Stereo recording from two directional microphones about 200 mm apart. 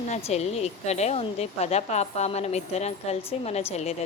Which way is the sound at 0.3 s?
30° left (ahead or behind).